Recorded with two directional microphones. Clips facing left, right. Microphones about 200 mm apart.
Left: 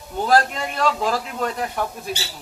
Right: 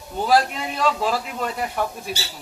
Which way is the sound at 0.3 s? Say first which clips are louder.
Left 1 dB; 10° right (ahead or behind).